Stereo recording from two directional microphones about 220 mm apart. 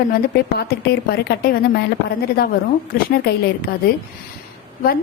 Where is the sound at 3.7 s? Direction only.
45° left (ahead or behind).